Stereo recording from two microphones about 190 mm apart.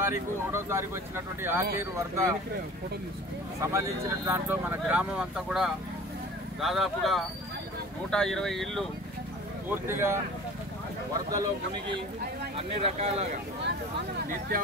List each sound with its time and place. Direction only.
0.0 s speech: 15° right (ahead or behind)
3.6 s speech: 15° right (ahead or behind); by 8.8 s centre (ahead or behind)
9.8 s speech: 15° right (ahead or behind)
11.2 s speech: 20° right (ahead or behind)
12.5 s speech: 35° right (ahead or behind)